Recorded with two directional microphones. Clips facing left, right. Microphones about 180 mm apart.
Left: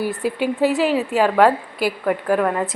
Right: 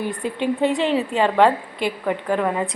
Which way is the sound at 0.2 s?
10° left (ahead or behind).